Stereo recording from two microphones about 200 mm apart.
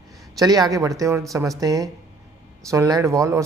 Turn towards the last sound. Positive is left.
turn(degrees=-15)  # may be behind; listen again after turning